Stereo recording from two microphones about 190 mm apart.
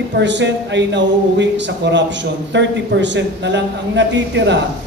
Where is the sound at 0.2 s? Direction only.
70° right (ahead or behind).